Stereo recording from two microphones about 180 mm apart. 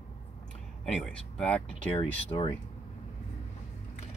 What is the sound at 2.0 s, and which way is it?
Speech, 25° left (ahead or behind).